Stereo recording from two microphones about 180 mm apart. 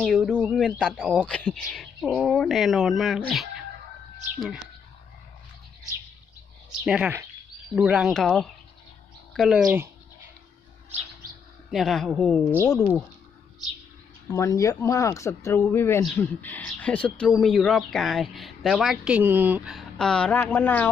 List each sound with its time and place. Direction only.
0.0 s speech: centre (ahead or behind)
6.8 s speech: 5° right (ahead or behind)
11.7 s speech: centre (ahead or behind)
14.3 s speech: 20° left (ahead or behind)